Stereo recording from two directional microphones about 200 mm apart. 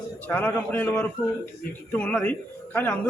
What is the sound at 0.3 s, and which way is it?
Speech, 10° left (ahead or behind).